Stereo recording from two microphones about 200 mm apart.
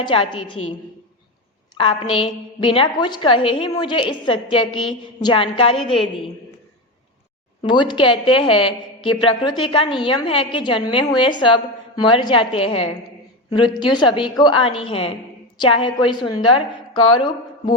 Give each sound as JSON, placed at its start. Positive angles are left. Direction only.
{"t": 0.0, "sound": "a woman's voice", "side_deg": 25}
{"t": 1.7, "sound": "a woman's voice", "side_deg": 25}
{"t": 7.6, "sound": "a woman's voice", "side_deg": 25}